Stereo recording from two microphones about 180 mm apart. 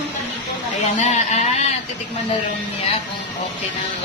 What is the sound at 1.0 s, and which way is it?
Speech, 40° left (ahead or behind).